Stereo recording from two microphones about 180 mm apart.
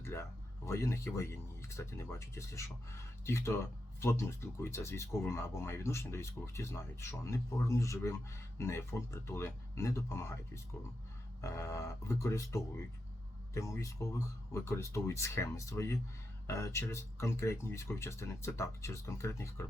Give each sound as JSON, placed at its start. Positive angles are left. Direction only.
{"t": 0.0, "sound": "speech", "side_deg": 15}